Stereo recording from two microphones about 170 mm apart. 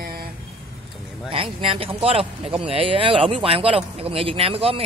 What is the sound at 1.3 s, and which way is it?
Speech, 30° right (ahead or behind).